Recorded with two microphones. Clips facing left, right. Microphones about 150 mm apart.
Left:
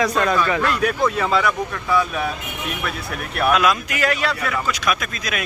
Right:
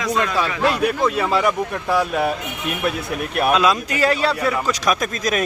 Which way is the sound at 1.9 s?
70° right (ahead or behind).